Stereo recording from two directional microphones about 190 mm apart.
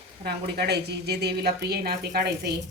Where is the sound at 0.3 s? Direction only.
60° right (ahead or behind).